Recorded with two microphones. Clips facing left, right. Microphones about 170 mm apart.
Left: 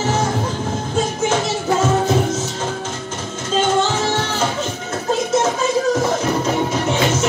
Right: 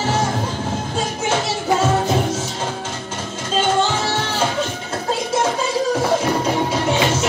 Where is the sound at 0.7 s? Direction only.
15° right (ahead or behind).